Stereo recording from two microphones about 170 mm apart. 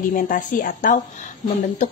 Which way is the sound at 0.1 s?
50° left (ahead or behind).